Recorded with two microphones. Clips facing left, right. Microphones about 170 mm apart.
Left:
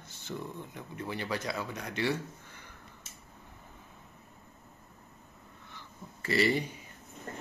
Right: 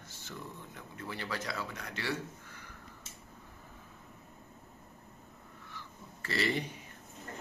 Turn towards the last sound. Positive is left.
turn(degrees=10)  # may be behind; listen again after turning